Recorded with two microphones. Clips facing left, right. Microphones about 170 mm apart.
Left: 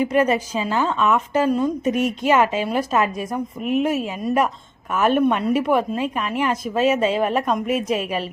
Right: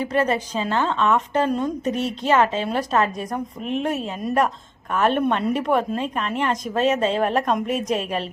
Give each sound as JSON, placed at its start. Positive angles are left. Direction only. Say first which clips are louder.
{"t": 0.0, "sound": "a woman's voice", "louder": "left 3 dB", "side_deg": 15}